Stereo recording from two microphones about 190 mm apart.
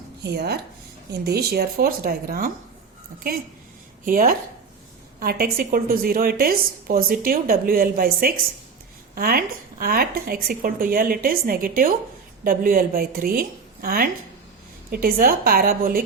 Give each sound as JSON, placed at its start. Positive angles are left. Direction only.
{"t": 0.2, "sound": "speech", "side_deg": -60}
{"t": 4.0, "sound": "a woman's voice", "side_deg": -50}